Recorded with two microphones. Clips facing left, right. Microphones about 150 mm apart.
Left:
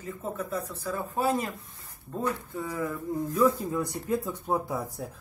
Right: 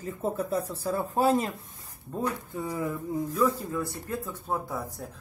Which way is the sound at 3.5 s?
15° left (ahead or behind).